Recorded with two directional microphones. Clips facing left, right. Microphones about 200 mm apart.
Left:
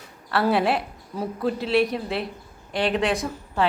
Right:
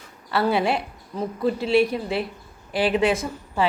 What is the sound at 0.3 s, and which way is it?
A woman's voice, centre (ahead or behind).